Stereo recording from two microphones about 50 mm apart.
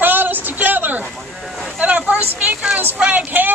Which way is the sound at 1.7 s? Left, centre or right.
Right.